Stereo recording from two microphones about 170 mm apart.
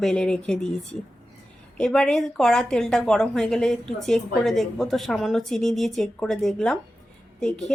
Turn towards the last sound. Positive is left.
turn(degrees=5)  # may be behind; listen again after turning